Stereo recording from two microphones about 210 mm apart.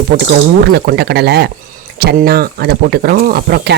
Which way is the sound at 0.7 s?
50° right (ahead or behind).